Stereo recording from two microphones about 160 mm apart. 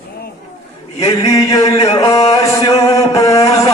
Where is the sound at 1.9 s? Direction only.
20° left (ahead or behind).